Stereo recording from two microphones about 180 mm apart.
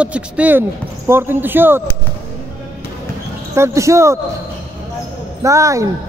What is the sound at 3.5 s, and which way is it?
Speech, 15° right (ahead or behind).